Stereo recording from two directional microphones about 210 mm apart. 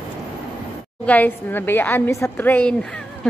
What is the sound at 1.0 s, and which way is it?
A woman's voice, 10° left (ahead or behind).